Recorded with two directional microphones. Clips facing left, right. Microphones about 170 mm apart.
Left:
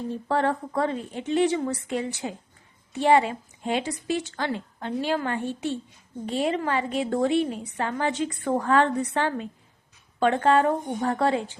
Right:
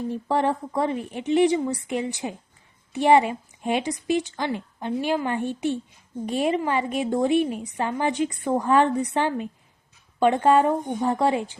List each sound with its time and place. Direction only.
0.1 s a woman's voice: 15° right (ahead or behind)